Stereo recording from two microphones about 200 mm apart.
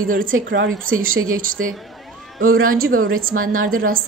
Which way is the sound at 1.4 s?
45° right (ahead or behind).